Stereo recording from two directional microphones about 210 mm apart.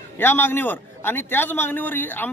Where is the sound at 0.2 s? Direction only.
10° left (ahead or behind).